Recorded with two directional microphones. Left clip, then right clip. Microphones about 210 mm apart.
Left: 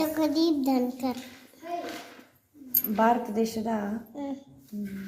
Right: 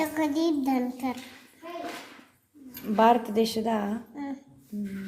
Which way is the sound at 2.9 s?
35° right (ahead or behind).